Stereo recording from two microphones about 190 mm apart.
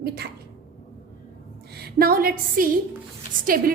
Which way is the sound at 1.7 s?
55° right (ahead or behind).